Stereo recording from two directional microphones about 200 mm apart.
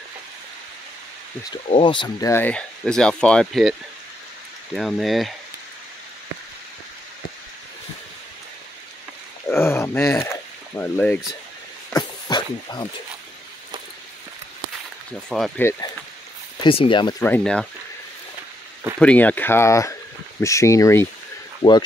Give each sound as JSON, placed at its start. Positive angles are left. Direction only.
{"t": 1.5, "sound": "speech", "side_deg": 25}
{"t": 4.7, "sound": "speech", "side_deg": 0}
{"t": 9.5, "sound": "a sound", "side_deg": 10}
{"t": 10.8, "sound": "speech", "side_deg": 10}
{"t": 11.9, "sound": "a sound", "side_deg": 20}
{"t": 15.2, "sound": "speech", "side_deg": 5}
{"t": 16.6, "sound": "speech", "side_deg": 25}
{"t": 17.2, "sound": "speech", "side_deg": 5}
{"t": 18.9, "sound": "speech", "side_deg": 5}